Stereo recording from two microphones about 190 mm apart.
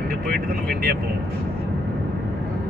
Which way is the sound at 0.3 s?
50° right (ahead or behind).